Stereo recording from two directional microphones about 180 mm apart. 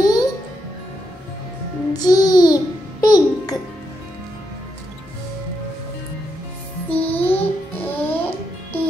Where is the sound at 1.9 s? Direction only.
20° left (ahead or behind).